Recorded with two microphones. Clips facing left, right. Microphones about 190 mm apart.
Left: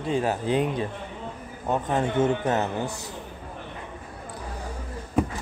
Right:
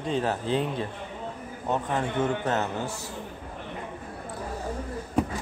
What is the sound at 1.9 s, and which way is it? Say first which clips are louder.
A man's voice: left 6 dB; 25° left (ahead or behind).